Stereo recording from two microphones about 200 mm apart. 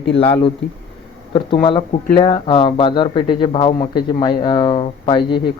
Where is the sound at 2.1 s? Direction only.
25° left (ahead or behind).